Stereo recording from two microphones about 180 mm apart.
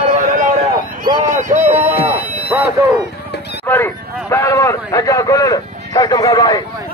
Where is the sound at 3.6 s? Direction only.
15° left (ahead or behind).